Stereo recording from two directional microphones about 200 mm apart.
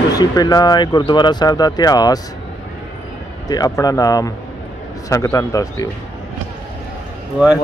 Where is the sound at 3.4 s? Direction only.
20° left (ahead or behind).